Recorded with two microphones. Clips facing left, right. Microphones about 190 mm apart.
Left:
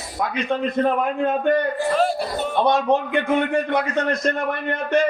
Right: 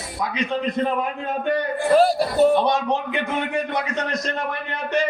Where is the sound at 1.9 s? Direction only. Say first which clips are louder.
Right 9 dB; 40° right (ahead or behind).